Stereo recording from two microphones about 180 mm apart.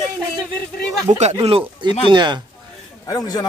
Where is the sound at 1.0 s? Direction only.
35° right (ahead or behind).